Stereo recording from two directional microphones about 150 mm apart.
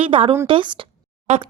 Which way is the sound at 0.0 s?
35° right (ahead or behind).